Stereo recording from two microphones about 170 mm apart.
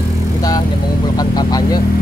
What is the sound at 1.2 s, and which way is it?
Speech, 25° left (ahead or behind).